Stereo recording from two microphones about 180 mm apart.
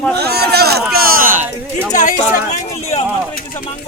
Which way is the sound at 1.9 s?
45° left (ahead or behind).